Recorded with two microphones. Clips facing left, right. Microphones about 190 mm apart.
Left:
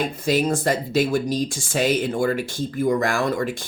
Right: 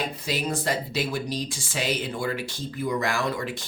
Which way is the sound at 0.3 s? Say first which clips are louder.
Left 8 dB; 50° left (ahead or behind).